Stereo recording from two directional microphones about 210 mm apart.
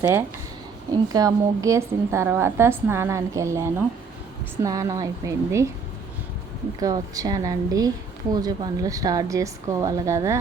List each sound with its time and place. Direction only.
0.0 s a woman's voice: 10° right (ahead or behind)
6.7 s a woman's voice: 15° right (ahead or behind)